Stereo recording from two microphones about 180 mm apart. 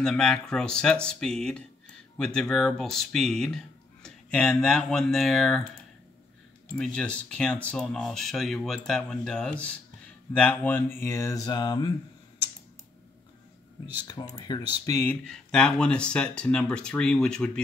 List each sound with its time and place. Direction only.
0.0 s speech: 5° left (ahead or behind)
6.8 s speech: 5° left (ahead or behind); by 11.9 s 25° left (ahead or behind)
14.0 s speech: 20° left (ahead or behind)
15.2 s speech: 5° left (ahead or behind)